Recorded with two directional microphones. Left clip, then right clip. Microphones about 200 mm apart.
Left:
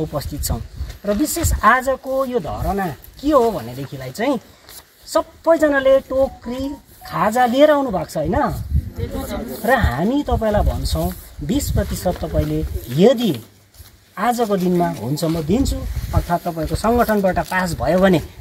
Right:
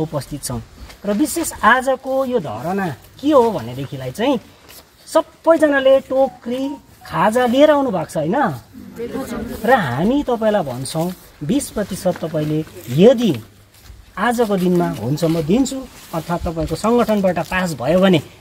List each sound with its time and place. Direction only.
0.1 s speech: 5° right (ahead or behind)
9.6 s speech: centre (ahead or behind)